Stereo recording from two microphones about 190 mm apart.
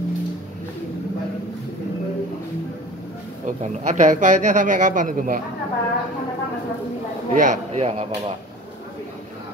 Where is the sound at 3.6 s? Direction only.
40° right (ahead or behind).